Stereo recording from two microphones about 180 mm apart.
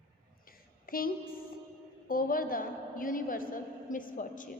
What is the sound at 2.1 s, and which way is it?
A woman's voice, 50° left (ahead or behind).